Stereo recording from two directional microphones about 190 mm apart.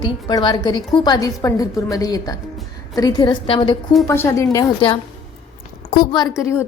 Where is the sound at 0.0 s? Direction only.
25° left (ahead or behind).